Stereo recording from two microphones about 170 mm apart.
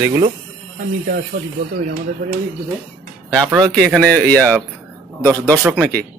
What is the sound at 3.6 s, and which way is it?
Speech, 5° left (ahead or behind).